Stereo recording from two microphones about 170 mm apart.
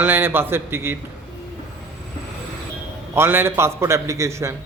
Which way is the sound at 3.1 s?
15° right (ahead or behind).